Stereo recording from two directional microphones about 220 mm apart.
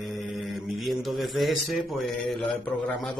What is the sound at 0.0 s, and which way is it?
Mantra, centre (ahead or behind).